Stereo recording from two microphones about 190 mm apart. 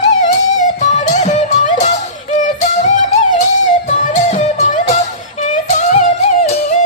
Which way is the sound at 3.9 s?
40° left (ahead or behind).